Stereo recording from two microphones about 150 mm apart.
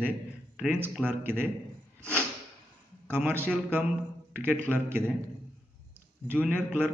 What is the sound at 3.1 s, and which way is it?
A man's voice, 15° right (ahead or behind).